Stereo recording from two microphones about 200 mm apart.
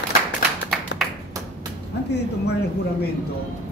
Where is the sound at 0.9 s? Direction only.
60° left (ahead or behind).